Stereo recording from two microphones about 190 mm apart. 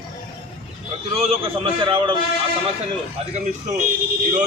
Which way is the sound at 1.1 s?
30° right (ahead or behind).